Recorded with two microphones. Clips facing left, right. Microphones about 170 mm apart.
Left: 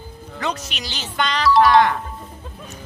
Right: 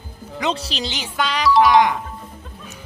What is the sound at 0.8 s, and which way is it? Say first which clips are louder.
Speech: left 1 dB; 15° right (ahead or behind).